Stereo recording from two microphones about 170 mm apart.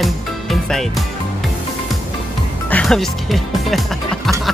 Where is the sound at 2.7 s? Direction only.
5° left (ahead or behind).